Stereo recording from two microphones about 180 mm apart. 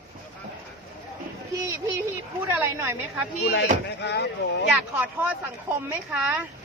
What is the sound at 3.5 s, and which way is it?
Speech, 70° left (ahead or behind).